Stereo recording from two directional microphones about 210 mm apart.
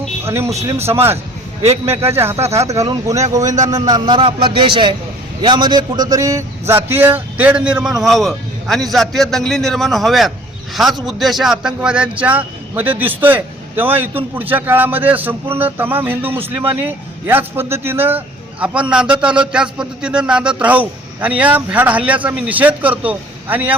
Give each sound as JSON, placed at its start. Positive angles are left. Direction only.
{"t": 0.3, "sound": "a man's voice", "side_deg": -10}
{"t": 1.6, "sound": "a man's voice", "side_deg": -30}
{"t": 2.1, "sound": "a man's voice", "side_deg": -10}